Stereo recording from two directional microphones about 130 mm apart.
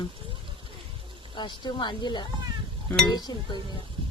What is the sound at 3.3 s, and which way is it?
Speech, 30° left (ahead or behind).